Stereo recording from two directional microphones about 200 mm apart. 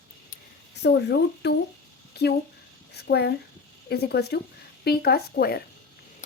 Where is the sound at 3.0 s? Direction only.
55° left (ahead or behind).